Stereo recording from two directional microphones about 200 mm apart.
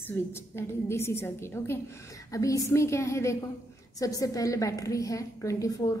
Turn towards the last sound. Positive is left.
turn(degrees=15)  # may be behind; listen again after turning